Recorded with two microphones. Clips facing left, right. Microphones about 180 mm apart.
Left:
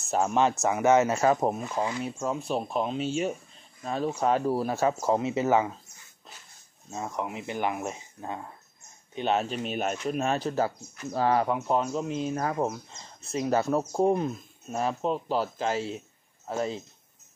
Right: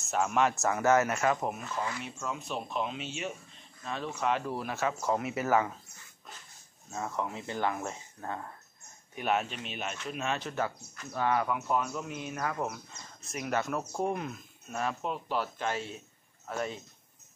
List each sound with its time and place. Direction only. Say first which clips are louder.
0.0 s speech: left 4 dB; 30° left (ahead or behind)
0.6 s speech: left 5 dB; 15° left (ahead or behind)
2.0 s speech: left 7 dB; 35° left (ahead or behind)
6.9 s speech: left 2 dB; 20° left (ahead or behind)
9.1 s speech: left 4 dB; 25° left (ahead or behind)